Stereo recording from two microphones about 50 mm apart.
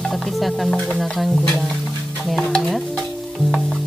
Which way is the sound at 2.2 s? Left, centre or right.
Centre.